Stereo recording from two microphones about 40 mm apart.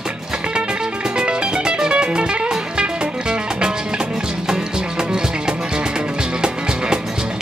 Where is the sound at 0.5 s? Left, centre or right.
Right.